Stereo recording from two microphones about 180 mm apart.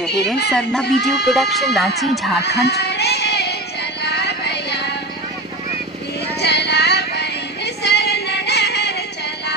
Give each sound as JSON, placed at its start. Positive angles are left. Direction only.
{"t": 0.5, "sound": "speech", "side_deg": 0}
{"t": 2.4, "sound": "music", "side_deg": 65}
{"t": 6.4, "sound": "music", "side_deg": 70}